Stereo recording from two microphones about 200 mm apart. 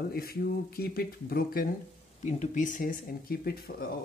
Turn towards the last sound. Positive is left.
turn(degrees=50)  # may be behind; listen again after turning